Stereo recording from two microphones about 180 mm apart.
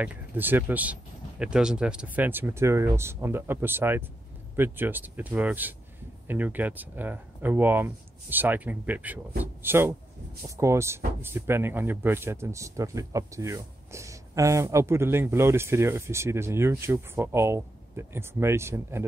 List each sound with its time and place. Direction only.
0.0 s speech: 10° right (ahead or behind)